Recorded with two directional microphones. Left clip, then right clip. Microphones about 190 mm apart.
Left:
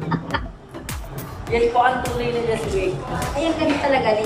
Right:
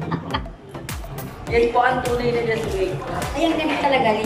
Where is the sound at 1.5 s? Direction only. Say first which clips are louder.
Right 1 dB; 10° left (ahead or behind).